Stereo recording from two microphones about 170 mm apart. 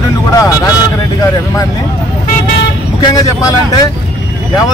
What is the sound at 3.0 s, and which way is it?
Speech, 20° left (ahead or behind).